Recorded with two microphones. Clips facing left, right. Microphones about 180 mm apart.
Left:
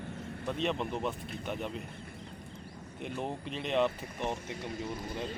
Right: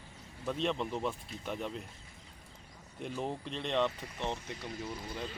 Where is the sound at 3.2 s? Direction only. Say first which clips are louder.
Even; 5° left (ahead or behind).